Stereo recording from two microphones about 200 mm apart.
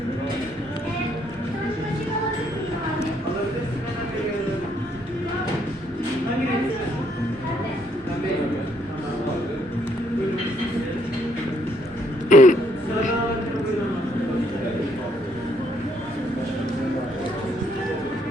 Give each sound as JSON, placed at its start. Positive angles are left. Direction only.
{"t": 12.3, "sound": "throat clearing", "side_deg": 40}